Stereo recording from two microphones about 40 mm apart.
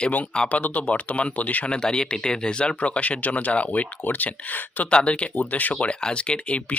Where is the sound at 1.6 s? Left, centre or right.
Left.